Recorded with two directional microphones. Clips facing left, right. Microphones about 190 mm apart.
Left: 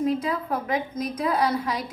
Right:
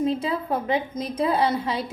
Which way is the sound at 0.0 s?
25° right (ahead or behind).